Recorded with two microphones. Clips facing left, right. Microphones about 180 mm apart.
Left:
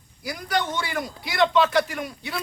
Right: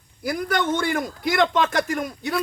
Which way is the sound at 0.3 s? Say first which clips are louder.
Right 4 dB; 50° right (ahead or behind).